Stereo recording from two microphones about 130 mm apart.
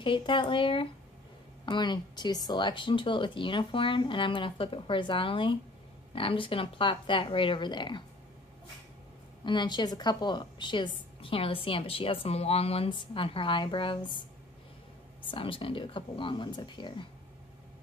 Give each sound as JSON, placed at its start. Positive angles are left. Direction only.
{"t": 0.0, "sound": "a woman's voice", "side_deg": 40}
{"t": 9.4, "sound": "a woman's voice", "side_deg": 35}
{"t": 15.2, "sound": "a woman's voice", "side_deg": 40}